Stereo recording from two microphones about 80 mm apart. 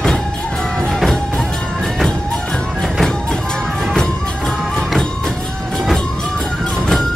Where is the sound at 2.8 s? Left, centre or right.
Centre.